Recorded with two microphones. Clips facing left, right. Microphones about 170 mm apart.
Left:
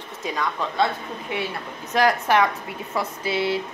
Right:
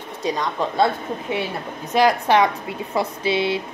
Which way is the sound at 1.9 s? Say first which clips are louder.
Right 3 dB; 15° right (ahead or behind).